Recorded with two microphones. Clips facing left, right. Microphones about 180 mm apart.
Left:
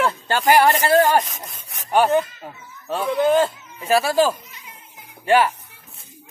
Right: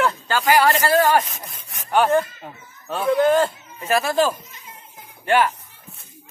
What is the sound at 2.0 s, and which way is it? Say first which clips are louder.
A man's voice: even; 5° left (ahead or behind).